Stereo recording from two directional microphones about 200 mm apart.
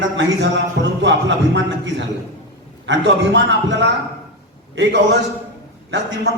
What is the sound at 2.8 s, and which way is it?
Music, 65° right (ahead or behind).